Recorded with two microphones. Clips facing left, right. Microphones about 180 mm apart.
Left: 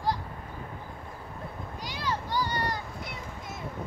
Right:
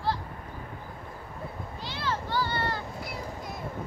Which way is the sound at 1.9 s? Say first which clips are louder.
Right 1 dB; 15° left (ahead or behind).